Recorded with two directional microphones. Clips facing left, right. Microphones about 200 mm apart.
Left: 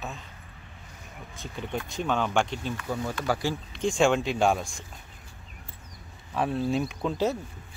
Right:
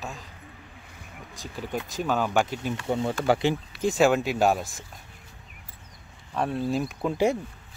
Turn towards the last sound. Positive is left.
turn(degrees=-10)  # may be behind; listen again after turning